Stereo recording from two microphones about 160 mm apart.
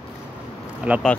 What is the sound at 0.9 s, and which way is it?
Speech, 10° right (ahead or behind).